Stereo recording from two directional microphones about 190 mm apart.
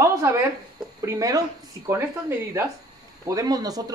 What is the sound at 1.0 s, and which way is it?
Speech, 15° right (ahead or behind).